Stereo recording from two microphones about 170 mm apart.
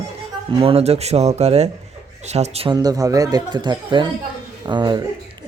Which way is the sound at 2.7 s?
20° right (ahead or behind).